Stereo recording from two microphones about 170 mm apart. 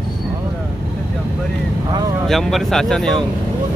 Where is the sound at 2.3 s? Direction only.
Centre (ahead or behind).